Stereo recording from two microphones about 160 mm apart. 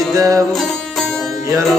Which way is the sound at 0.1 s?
20° right (ahead or behind).